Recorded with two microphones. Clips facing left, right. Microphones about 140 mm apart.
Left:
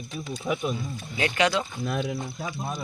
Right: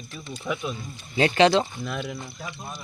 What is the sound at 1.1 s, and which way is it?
Speech, 30° right (ahead or behind).